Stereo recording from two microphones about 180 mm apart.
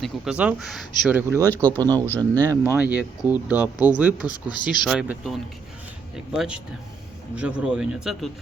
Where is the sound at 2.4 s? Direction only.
15° right (ahead or behind).